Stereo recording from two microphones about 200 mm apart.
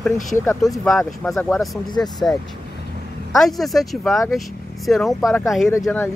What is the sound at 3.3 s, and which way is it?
Speech, centre (ahead or behind).